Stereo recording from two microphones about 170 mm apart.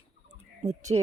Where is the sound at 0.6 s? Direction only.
40° right (ahead or behind).